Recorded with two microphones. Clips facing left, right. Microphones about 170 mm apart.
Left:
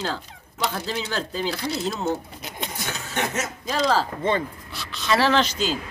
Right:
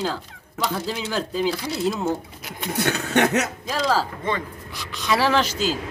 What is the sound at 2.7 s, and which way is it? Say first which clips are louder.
Speech: right 10 dB; 65° right (ahead or behind).